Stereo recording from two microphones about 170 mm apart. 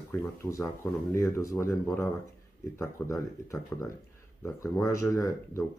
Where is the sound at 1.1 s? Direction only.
15° left (ahead or behind).